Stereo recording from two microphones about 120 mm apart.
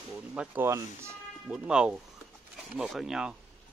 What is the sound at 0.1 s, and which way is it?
Speech, 10° right (ahead or behind).